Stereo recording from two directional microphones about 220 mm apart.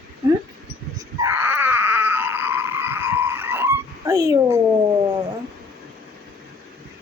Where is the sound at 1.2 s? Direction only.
10° right (ahead or behind).